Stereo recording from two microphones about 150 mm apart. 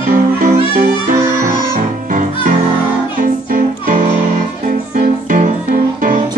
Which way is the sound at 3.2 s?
65° right (ahead or behind).